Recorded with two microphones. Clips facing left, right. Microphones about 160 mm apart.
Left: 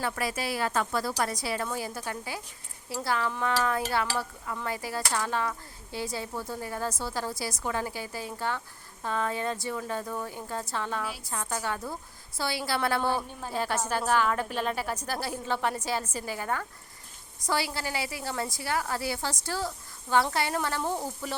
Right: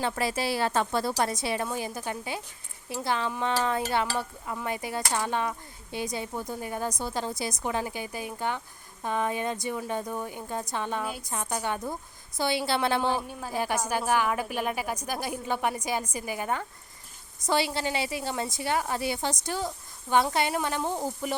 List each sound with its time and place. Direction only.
0.0 s a woman's voice: 25° right (ahead or behind)